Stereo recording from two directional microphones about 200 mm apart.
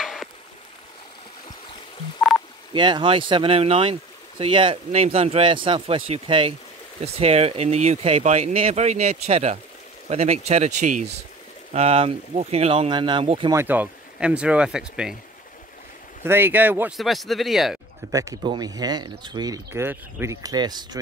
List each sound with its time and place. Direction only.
0.0 s a sound: centre (ahead or behind)
2.7 s speech: 25° right (ahead or behind)
13.5 s speech: 10° right (ahead or behind)
16.3 s speech: 10° right (ahead or behind)
18.1 s speech: 15° right (ahead or behind)